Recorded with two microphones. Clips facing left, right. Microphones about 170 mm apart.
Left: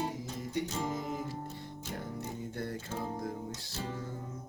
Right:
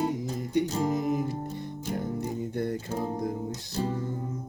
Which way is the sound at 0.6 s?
40° right (ahead or behind).